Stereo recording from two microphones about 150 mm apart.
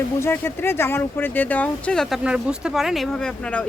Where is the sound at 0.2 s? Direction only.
15° left (ahead or behind).